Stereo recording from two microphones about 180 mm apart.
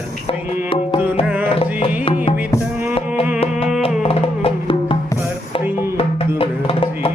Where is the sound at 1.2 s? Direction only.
10° right (ahead or behind).